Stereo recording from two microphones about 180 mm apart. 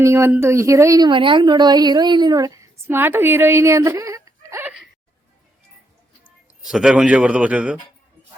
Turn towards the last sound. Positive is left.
turn(degrees=-5)  # may be behind; listen again after turning